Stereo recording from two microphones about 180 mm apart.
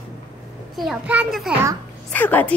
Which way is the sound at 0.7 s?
5° right (ahead or behind).